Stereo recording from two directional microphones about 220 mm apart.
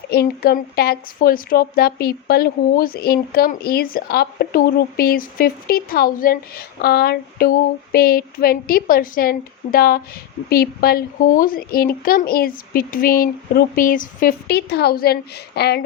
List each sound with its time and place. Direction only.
0.1 s a woman's voice: 45° left (ahead or behind)